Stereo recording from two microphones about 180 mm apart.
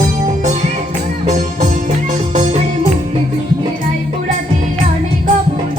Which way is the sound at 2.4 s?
40° right (ahead or behind).